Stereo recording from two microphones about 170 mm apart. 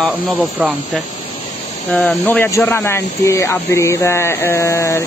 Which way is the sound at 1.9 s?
5° left (ahead or behind).